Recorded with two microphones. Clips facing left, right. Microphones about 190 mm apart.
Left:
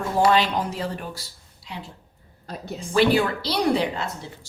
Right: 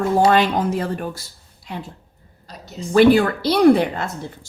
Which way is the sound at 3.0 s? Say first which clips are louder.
Right 6 dB; 50° right (ahead or behind).